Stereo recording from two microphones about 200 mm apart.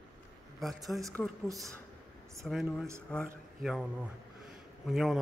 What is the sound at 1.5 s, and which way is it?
Speech, 15° right (ahead or behind).